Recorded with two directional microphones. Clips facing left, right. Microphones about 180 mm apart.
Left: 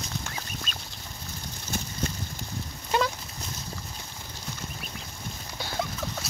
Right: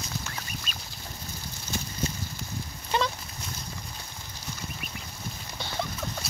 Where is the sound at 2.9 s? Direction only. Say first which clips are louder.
Left 2 dB; 5° left (ahead or behind).